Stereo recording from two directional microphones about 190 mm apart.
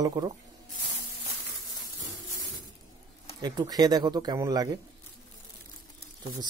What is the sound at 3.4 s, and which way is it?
Speech, 20° right (ahead or behind).